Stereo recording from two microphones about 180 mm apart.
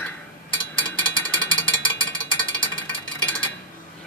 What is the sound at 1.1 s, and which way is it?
Jackhammer, 25° left (ahead or behind).